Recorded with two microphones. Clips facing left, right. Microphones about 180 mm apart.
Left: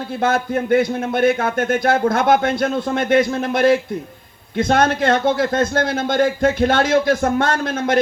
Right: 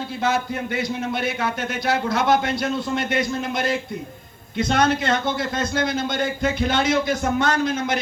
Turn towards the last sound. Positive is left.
turn(degrees=55)  # may be behind; listen again after turning